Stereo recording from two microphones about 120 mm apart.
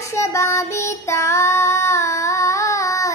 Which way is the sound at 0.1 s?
25° left (ahead or behind).